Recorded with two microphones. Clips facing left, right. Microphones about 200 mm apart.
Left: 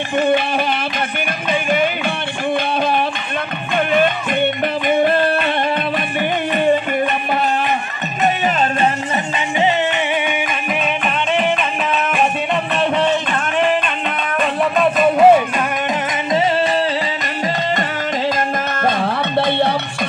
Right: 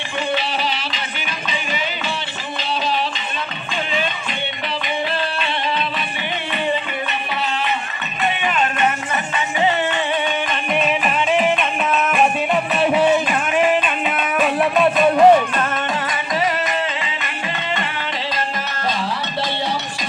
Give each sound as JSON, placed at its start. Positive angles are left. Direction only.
{"t": 0.2, "sound": "speech", "side_deg": 50}
{"t": 1.5, "sound": "music", "side_deg": 55}
{"t": 2.6, "sound": "a sound", "side_deg": 55}
{"t": 3.7, "sound": "music", "side_deg": 55}
{"t": 12.8, "sound": "a sound", "side_deg": -5}
{"t": 18.9, "sound": "music", "side_deg": 55}